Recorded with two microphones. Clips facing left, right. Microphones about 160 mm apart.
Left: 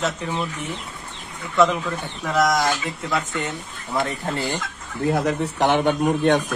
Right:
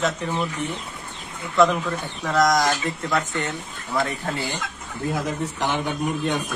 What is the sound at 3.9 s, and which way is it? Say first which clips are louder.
Speech: even; 30° left (ahead or behind).